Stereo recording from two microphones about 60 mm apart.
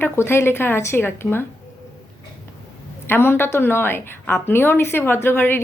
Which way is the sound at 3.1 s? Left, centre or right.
Left.